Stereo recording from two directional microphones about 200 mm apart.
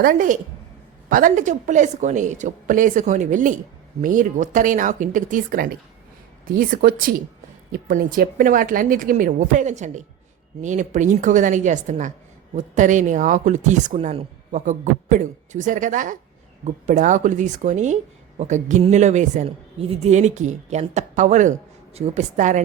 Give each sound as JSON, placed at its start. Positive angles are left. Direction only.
{"t": 0.0, "sound": "a woman's voice", "side_deg": -40}